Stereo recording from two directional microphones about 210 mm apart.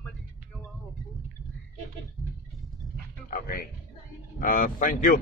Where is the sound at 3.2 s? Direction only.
40° left (ahead or behind).